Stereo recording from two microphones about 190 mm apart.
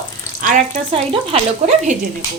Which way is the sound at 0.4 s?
40° right (ahead or behind).